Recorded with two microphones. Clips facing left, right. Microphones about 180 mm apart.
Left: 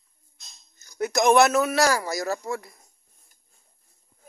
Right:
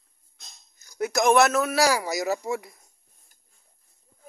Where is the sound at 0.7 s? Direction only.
5° right (ahead or behind).